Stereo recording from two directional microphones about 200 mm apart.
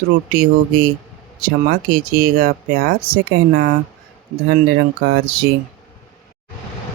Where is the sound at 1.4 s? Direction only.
45° right (ahead or behind).